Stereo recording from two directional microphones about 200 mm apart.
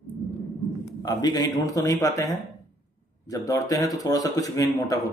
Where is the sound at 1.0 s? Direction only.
20° left (ahead or behind).